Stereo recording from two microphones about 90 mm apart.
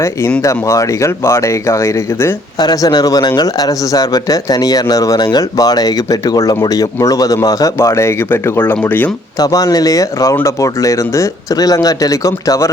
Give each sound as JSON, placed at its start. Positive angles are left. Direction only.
{"t": 0.4, "sound": "speech", "side_deg": 35}
{"t": 2.6, "sound": "speech", "side_deg": 45}
{"t": 9.4, "sound": "speech", "side_deg": 40}